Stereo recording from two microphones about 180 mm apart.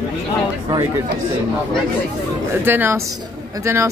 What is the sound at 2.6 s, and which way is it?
Speech, 10° right (ahead or behind).